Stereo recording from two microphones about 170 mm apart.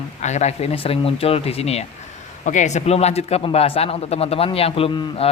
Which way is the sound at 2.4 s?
45° left (ahead or behind).